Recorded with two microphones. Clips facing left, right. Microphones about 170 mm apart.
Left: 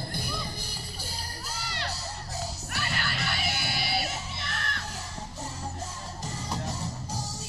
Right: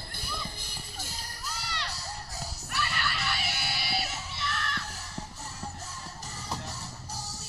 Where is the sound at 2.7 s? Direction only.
50° left (ahead or behind).